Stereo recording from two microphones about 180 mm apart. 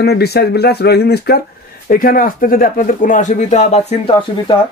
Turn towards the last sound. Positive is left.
turn(degrees=35)  # may be behind; listen again after turning